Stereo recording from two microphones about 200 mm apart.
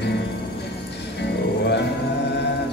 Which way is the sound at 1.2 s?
60° left (ahead or behind).